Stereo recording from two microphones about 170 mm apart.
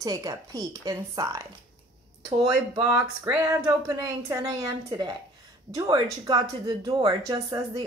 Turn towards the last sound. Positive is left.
turn(degrees=-25)  # may be behind; listen again after turning